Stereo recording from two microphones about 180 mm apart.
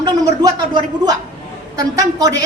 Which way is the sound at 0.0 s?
20° right (ahead or behind).